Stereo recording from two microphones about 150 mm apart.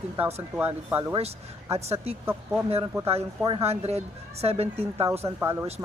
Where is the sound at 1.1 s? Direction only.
45° right (ahead or behind).